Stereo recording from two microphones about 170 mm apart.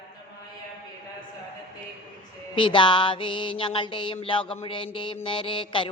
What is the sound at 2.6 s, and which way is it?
Mantra, 30° left (ahead or behind).